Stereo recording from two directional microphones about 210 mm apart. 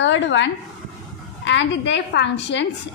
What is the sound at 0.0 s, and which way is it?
A woman's voice, 60° left (ahead or behind).